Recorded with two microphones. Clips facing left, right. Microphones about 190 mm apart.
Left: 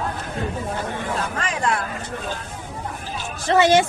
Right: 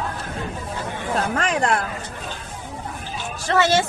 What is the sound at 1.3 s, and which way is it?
Speech, 60° right (ahead or behind).